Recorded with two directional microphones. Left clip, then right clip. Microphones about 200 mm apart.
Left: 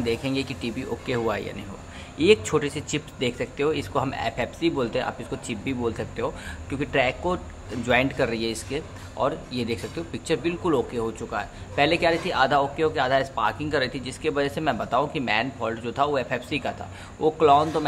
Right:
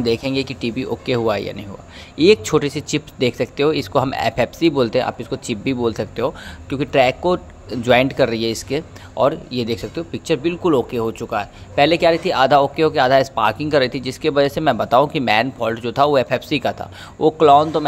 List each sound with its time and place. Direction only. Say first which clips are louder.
0.0 s speech: right 7 dB; 30° right (ahead or behind)